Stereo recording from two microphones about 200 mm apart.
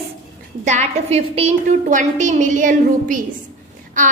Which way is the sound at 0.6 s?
35° right (ahead or behind).